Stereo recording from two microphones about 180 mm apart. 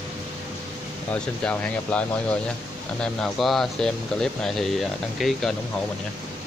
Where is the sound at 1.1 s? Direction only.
5° left (ahead or behind).